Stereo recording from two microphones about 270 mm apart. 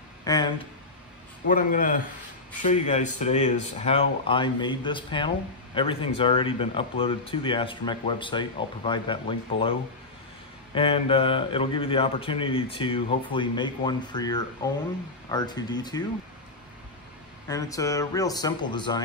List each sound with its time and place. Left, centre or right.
0.2 s a sound: centre
1.4 s a man's voice: left; by 16.0 s centre
17.5 s speech: centre